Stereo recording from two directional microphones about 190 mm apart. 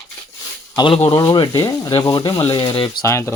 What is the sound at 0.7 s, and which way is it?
Speech, 25° left (ahead or behind).